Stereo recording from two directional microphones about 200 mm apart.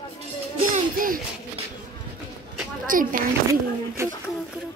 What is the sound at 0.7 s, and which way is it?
Music, 45° right (ahead or behind).